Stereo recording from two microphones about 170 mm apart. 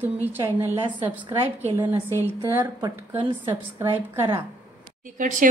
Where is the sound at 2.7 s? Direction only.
25° right (ahead or behind).